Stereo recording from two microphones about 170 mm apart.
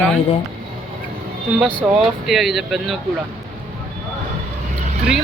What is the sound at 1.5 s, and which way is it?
Speech, centre (ahead or behind).